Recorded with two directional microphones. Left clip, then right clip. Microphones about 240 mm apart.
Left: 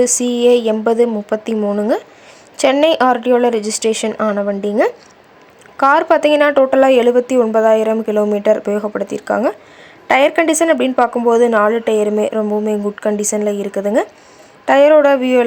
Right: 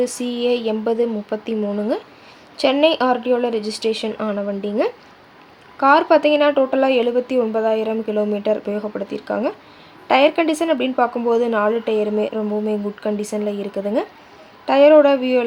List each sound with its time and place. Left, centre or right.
0.0 s a woman's voice: centre